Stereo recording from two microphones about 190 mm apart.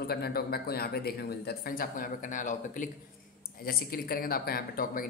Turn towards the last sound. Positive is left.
turn(degrees=50)  # may be behind; listen again after turning